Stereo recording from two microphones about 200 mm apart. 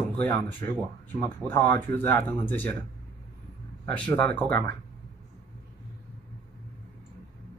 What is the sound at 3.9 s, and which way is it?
Speech, 5° left (ahead or behind).